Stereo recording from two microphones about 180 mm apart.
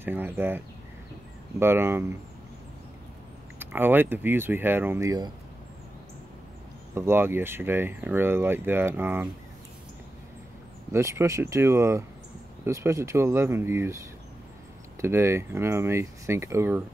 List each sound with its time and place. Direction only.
0.0 s speech: 10° right (ahead or behind)
1.6 s speech: 15° right (ahead or behind)
3.5 s speech: 10° right (ahead or behind)
6.9 s speech: 15° right (ahead or behind)
10.9 s speech: 15° right (ahead or behind)